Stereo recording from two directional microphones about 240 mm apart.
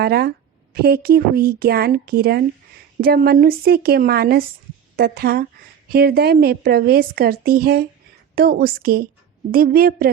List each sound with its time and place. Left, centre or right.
0.0 s speech: right